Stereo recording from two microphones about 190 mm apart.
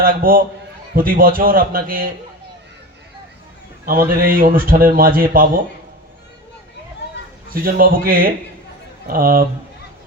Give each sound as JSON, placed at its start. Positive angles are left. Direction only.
{"t": 0.0, "sound": "a man's voice", "side_deg": -50}
{"t": 3.8, "sound": "a man's voice", "side_deg": -50}
{"t": 7.5, "sound": "a man's voice", "side_deg": -50}